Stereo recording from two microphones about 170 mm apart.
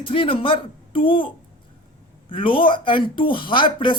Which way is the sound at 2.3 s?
30° left (ahead or behind).